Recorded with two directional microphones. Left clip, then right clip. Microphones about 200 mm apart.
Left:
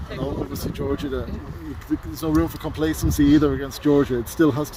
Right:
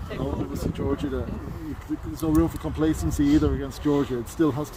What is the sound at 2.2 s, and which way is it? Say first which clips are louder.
Speech: even; 50° left (ahead or behind).